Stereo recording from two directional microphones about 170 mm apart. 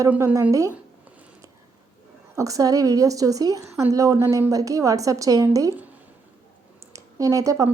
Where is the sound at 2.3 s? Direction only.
20° right (ahead or behind).